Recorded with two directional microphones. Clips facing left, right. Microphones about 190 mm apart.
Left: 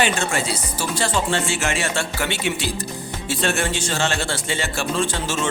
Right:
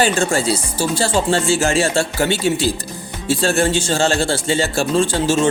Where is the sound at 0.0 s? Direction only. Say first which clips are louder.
Right 5 dB; 30° right (ahead or behind).